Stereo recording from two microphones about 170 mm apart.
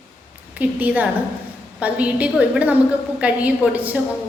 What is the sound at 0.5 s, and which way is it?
A woman's voice, 10° right (ahead or behind).